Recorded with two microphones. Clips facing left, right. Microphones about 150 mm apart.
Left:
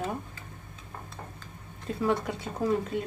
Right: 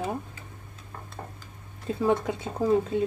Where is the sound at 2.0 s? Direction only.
25° right (ahead or behind).